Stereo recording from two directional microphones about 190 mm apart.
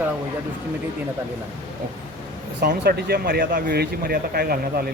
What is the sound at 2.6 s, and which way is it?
Speech, 60° right (ahead or behind).